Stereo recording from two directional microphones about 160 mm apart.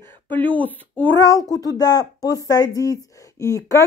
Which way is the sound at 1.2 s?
20° left (ahead or behind).